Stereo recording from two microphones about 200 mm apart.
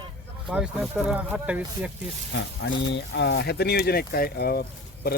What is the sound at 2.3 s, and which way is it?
Speech, 60° left (ahead or behind).